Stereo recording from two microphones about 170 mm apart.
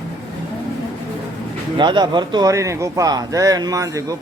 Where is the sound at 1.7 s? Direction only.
25° right (ahead or behind).